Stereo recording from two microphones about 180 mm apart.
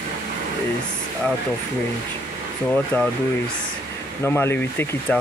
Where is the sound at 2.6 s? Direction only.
5° left (ahead or behind).